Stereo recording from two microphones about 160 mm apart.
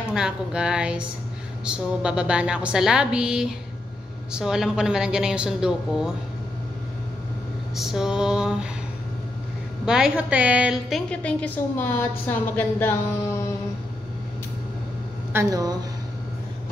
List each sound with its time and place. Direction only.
0.1 s a woman's voice: 5° right (ahead or behind)
7.7 s a woman's voice: 5° right (ahead or behind)
9.8 s a woman's voice: 5° right (ahead or behind)
11.1 s a woman's voice: 10° left (ahead or behind)
15.3 s a woman's voice: 25° right (ahead or behind)